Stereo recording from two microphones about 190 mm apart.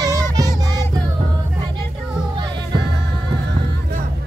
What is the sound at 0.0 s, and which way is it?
Child singing, 20° right (ahead or behind).